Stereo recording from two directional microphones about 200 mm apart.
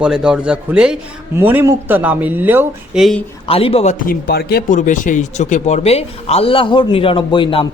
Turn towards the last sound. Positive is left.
turn(degrees=25)  # may be behind; listen again after turning